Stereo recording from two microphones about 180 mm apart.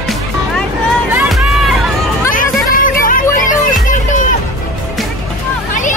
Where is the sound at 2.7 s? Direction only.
50° left (ahead or behind).